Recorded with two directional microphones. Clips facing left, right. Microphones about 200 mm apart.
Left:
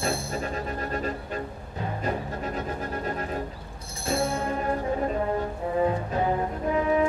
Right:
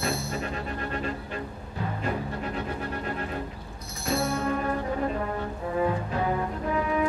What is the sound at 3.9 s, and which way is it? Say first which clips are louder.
Music: left 1 dB; 30° left (ahead or behind).